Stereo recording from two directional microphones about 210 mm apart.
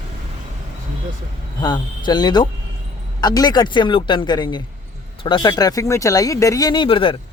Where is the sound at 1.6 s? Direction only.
20° left (ahead or behind).